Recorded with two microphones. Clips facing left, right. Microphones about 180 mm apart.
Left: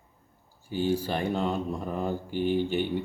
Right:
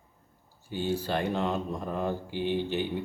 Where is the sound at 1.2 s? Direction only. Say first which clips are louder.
Left 1 dB; 10° left (ahead or behind).